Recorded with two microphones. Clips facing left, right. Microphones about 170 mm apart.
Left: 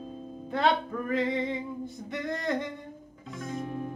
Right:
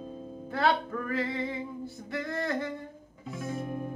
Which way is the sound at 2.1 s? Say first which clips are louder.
Left 1 dB; 20° left (ahead or behind).